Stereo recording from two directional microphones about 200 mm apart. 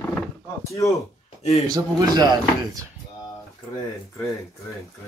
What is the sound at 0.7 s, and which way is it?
Speech, 15° left (ahead or behind).